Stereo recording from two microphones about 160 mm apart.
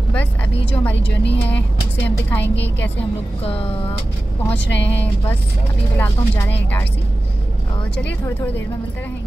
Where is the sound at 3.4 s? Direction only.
35° left (ahead or behind).